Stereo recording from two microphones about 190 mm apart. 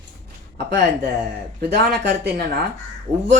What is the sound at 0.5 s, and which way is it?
Speech, 60° right (ahead or behind).